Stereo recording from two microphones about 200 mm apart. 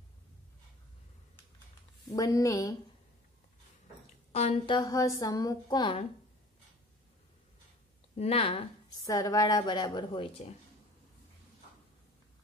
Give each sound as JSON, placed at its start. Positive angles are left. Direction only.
{"t": 2.1, "sound": "a woman's voice", "side_deg": 15}
{"t": 4.3, "sound": "a woman's voice", "side_deg": 30}
{"t": 8.2, "sound": "a woman's voice", "side_deg": 30}